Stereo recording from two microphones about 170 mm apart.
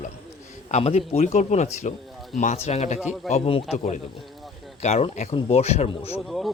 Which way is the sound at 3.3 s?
35° left (ahead or behind).